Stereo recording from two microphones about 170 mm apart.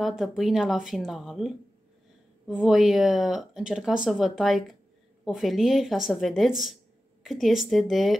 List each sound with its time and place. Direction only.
0.0 s speech: centre (ahead or behind)